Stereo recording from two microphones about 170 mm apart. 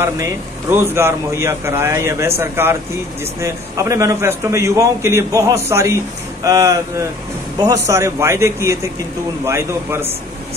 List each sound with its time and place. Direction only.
0.0 s a man's voice: 15° right (ahead or behind)